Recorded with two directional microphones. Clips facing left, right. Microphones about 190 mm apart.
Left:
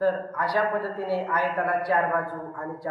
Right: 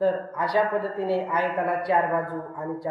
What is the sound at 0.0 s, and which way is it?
A man's voice, 15° right (ahead or behind).